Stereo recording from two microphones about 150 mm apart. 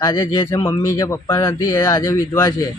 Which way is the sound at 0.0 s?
25° left (ahead or behind).